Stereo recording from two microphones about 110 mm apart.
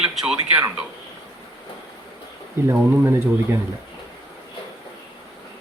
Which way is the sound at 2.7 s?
20° right (ahead or behind).